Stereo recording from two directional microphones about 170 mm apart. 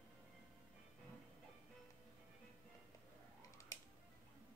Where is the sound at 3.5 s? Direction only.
20° left (ahead or behind).